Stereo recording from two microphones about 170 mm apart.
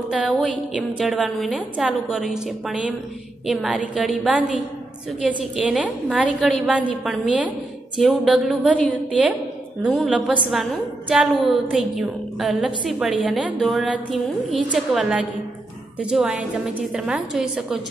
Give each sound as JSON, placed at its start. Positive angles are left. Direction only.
{"t": 0.1, "sound": "a woman's voice", "side_deg": 0}